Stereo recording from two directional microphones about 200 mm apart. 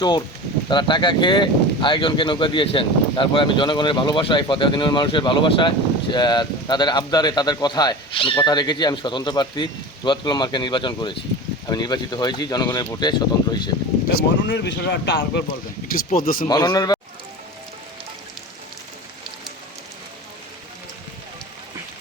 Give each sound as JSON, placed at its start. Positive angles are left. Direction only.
{"t": 0.7, "sound": "speech", "side_deg": 25}
{"t": 14.2, "sound": "speech", "side_deg": 60}
{"t": 15.9, "sound": "speech", "side_deg": 45}
{"t": 16.5, "sound": "speech", "side_deg": 20}